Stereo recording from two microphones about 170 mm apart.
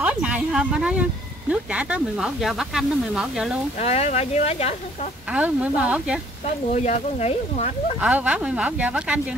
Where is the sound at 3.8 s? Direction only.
40° left (ahead or behind).